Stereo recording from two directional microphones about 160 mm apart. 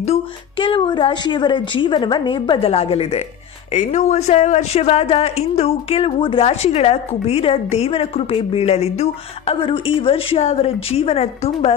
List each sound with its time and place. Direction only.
0.0 s speech: 40° left (ahead or behind)